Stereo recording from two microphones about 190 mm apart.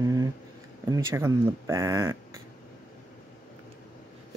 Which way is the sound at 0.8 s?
15° right (ahead or behind).